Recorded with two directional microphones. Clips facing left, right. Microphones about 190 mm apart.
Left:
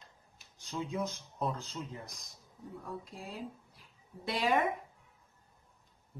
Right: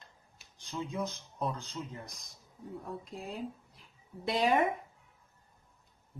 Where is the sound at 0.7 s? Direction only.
Centre (ahead or behind).